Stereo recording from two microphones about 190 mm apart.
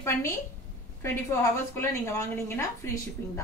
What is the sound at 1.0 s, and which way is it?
A woman's voice, 15° left (ahead or behind).